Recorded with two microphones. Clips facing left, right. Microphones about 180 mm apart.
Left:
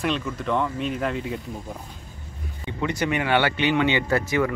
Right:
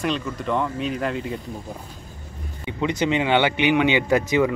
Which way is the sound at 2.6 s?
20° right (ahead or behind).